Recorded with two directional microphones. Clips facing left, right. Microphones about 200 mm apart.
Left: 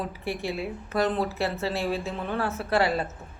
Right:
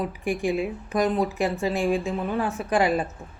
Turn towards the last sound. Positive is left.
turn(degrees=-15)  # may be behind; listen again after turning